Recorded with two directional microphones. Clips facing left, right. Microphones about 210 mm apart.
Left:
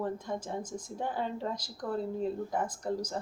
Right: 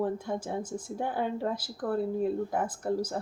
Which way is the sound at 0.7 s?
10° right (ahead or behind).